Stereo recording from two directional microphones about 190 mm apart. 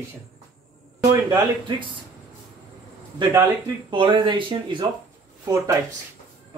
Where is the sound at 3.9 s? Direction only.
25° right (ahead or behind).